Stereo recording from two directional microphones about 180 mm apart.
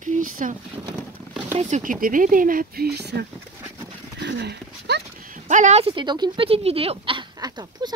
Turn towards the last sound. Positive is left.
turn(degrees=-25)  # may be behind; listen again after turning